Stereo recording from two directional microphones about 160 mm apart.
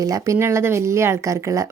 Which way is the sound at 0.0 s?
20° right (ahead or behind).